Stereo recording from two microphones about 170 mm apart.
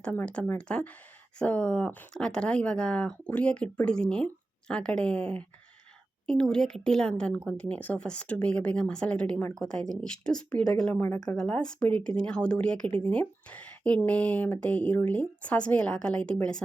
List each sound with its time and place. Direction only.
0.0 s speech: 10° left (ahead or behind)
11.1 s speech: 20° left (ahead or behind)
11.3 s speech: 5° left (ahead or behind)